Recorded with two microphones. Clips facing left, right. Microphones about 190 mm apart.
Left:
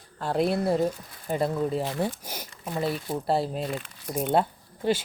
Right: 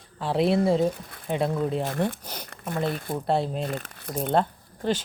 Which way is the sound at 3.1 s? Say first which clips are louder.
Right 1 dB; centre (ahead or behind).